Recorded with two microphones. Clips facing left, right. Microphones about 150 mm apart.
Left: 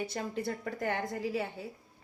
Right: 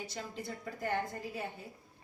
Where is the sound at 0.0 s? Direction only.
60° left (ahead or behind); by 1.5 s 90° left.